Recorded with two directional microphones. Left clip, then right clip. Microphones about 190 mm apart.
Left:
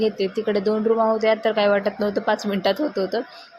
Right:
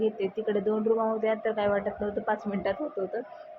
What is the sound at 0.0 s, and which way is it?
A woman's voice, 30° left (ahead or behind).